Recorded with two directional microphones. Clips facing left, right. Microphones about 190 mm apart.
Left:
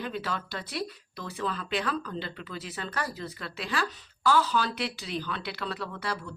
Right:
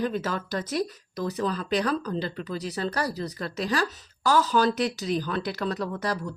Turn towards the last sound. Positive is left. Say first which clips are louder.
# right 6 dB
turn(degrees=-40)  # may be behind; listen again after turning